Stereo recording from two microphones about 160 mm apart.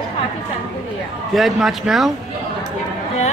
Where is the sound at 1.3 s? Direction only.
Centre (ahead or behind).